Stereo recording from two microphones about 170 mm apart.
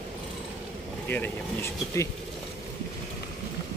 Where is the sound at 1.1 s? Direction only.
15° left (ahead or behind).